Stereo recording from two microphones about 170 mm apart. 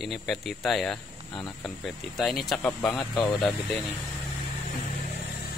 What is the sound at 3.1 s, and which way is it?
Speech, 25° left (ahead or behind).